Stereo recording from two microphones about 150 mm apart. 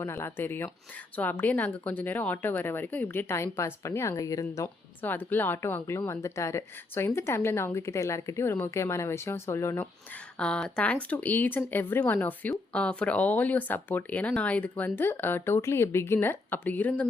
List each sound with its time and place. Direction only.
0.0 s speech: 20° left (ahead or behind)
10.3 s speech: 5° left (ahead or behind)